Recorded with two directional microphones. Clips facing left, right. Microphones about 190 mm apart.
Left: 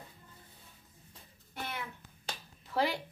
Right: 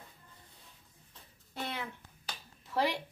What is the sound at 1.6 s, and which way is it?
Speech, 25° right (ahead or behind).